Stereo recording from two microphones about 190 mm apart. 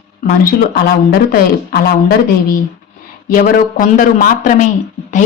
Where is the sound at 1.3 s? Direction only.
55° left (ahead or behind).